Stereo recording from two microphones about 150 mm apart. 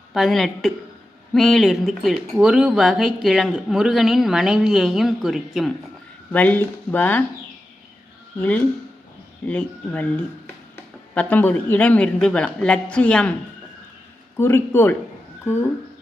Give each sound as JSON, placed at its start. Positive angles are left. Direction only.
{"t": 0.1, "sound": "speech", "side_deg": 0}
{"t": 6.3, "sound": "speech", "side_deg": 10}
{"t": 8.4, "sound": "speech", "side_deg": 10}
{"t": 14.3, "sound": "speech", "side_deg": 15}